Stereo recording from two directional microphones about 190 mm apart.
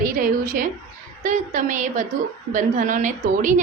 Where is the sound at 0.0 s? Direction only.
45° right (ahead or behind).